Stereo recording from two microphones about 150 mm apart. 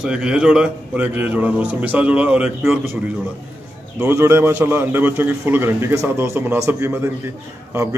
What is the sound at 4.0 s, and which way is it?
A man's voice, 20° right (ahead or behind).